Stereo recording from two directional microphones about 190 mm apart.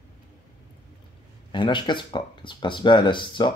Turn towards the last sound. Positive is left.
turn(degrees=25)  # may be behind; listen again after turning